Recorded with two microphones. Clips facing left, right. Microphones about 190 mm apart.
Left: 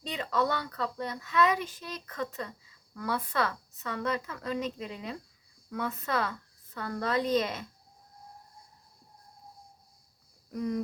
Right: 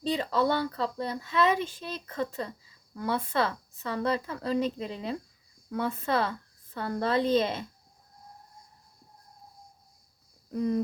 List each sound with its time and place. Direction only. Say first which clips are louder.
0.0 s a woman's voice: right 4 dB; 30° right (ahead or behind)
10.5 s speech: right 4 dB; 30° right (ahead or behind)